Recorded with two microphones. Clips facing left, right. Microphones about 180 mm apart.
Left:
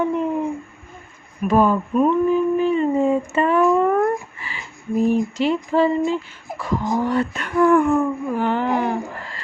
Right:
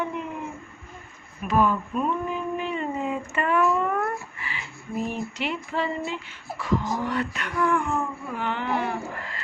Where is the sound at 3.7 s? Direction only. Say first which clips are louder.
Left 8 dB; 40° left (ahead or behind).